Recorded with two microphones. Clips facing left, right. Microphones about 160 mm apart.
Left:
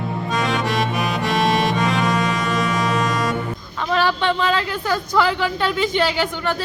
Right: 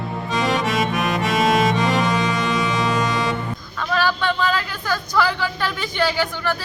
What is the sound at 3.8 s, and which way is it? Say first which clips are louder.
Speech: left 2 dB; 25° left (ahead or behind).